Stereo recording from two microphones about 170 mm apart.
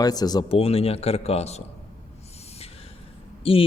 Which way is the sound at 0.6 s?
35° left (ahead or behind).